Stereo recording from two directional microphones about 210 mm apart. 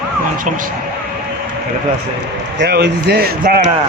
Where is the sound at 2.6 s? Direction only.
50° right (ahead or behind).